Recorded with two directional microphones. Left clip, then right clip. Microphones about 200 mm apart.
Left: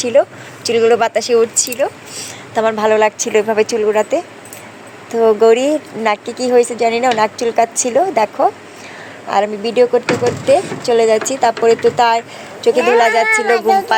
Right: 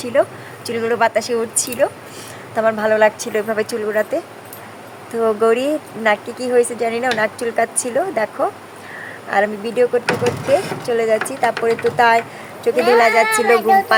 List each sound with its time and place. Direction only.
0.0 s speech: 15° left (ahead or behind)
5.2 s speech: 5° left (ahead or behind); by 13.8 s 25° left (ahead or behind)